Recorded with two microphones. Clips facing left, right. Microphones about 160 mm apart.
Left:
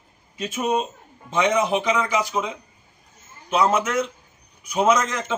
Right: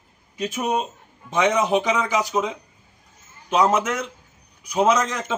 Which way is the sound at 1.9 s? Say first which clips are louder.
Even; 5° right (ahead or behind).